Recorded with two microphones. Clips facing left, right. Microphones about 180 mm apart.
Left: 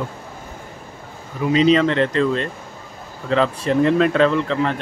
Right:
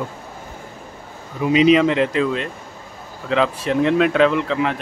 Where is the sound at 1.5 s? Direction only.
10° right (ahead or behind).